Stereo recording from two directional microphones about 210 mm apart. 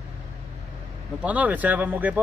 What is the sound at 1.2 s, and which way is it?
Speech, 5° right (ahead or behind).